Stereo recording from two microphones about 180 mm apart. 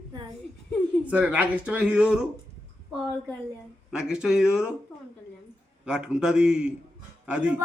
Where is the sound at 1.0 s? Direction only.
5° right (ahead or behind).